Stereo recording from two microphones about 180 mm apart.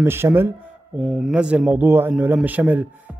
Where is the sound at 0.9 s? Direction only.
Centre (ahead or behind).